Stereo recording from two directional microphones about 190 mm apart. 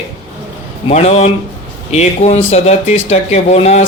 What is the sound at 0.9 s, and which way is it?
Speech, 35° left (ahead or behind).